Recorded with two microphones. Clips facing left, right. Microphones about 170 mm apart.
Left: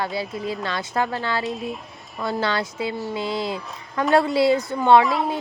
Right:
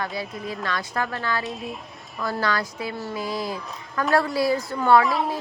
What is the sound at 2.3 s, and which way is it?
A woman's voice, 25° left (ahead or behind).